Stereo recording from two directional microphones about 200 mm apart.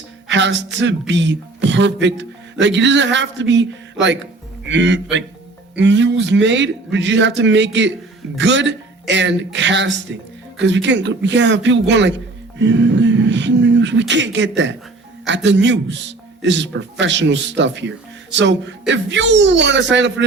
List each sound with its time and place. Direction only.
0.3 s speech: 65° right (ahead or behind)